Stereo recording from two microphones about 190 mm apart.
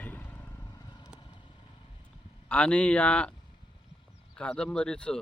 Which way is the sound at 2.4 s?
5° left (ahead or behind).